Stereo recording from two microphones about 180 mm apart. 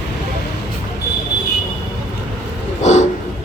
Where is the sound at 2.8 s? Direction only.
40° left (ahead or behind).